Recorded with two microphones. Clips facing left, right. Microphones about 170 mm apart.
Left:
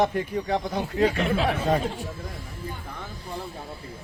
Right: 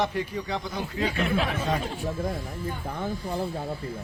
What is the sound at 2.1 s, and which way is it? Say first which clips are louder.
Speech: right 7 dB; 40° right (ahead or behind).